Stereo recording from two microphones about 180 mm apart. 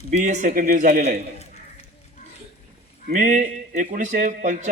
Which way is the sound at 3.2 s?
45° right (ahead or behind).